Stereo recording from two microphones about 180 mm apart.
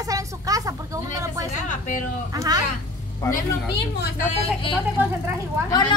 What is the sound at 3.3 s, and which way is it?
Speech, 65° left (ahead or behind).